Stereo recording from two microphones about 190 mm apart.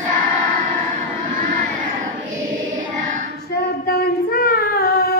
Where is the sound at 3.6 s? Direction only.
55° left (ahead or behind).